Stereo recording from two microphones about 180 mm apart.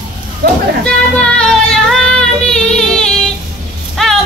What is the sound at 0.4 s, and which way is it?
Speech, 60° right (ahead or behind).